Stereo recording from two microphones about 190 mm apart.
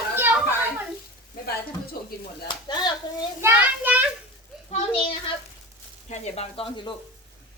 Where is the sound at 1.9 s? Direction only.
50° left (ahead or behind).